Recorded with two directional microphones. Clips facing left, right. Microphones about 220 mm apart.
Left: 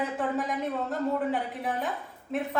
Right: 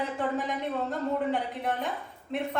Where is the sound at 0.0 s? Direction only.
Centre (ahead or behind).